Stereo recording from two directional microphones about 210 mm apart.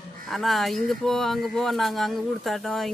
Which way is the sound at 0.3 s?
Centre (ahead or behind).